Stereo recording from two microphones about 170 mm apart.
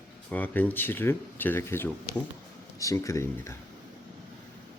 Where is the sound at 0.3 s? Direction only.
10° left (ahead or behind).